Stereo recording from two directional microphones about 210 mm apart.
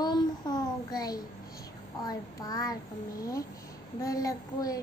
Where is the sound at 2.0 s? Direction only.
20° left (ahead or behind).